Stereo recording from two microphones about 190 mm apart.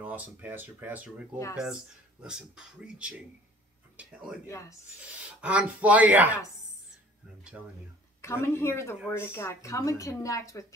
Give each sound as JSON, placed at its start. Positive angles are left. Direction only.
{"t": 0.0, "sound": "speech", "side_deg": -10}
{"t": 4.5, "sound": "speech", "side_deg": 15}
{"t": 5.4, "sound": "speech", "side_deg": -5}
{"t": 7.5, "sound": "speech", "side_deg": -10}
{"t": 8.2, "sound": "speech", "side_deg": 15}